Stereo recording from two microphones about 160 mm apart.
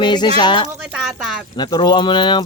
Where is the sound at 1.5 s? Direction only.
25° left (ahead or behind).